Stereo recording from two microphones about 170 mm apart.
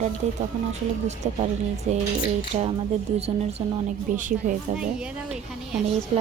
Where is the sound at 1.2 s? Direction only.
40° right (ahead or behind).